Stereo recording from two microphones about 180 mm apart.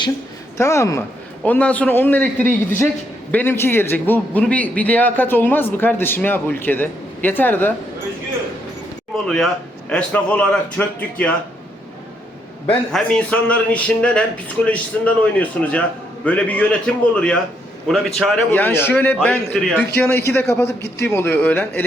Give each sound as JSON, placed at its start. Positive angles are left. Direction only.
{"t": 0.5, "sound": "a man's voice", "side_deg": 15}
{"t": 9.1, "sound": "a man's voice", "side_deg": 0}
{"t": 12.6, "sound": "a man's voice", "side_deg": 5}